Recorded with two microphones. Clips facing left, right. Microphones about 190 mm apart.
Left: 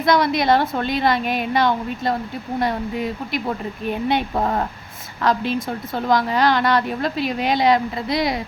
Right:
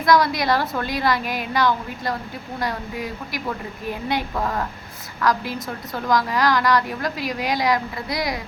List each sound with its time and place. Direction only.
0.0 s a woman's voice: 25° left (ahead or behind)